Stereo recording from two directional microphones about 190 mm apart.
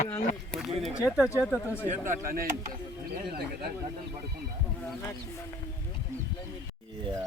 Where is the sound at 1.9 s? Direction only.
45° right (ahead or behind).